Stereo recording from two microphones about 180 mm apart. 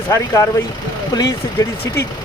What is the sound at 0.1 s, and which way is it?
Speech, 15° left (ahead or behind).